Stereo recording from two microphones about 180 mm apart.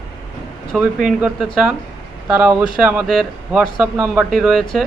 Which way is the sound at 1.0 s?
5° right (ahead or behind).